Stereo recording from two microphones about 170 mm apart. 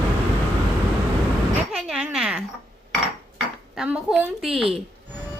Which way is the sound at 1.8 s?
5° right (ahead or behind).